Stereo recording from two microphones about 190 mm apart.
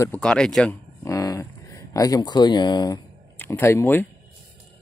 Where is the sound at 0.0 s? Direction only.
5° left (ahead or behind).